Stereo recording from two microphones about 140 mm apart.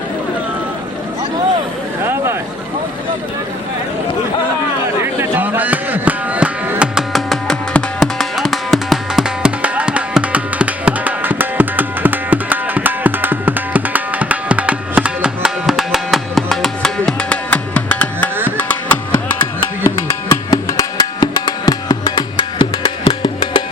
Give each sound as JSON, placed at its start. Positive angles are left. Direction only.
{"t": 5.0, "sound": "music", "side_deg": -15}
{"t": 20.5, "sound": "music", "side_deg": 25}